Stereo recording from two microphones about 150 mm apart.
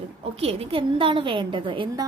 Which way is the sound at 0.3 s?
40° right (ahead or behind).